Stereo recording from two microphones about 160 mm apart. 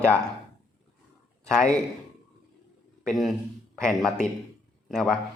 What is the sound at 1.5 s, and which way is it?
Speech, 5° left (ahead or behind).